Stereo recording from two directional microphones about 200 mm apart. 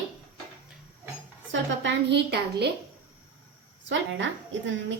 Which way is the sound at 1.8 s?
60° right (ahead or behind).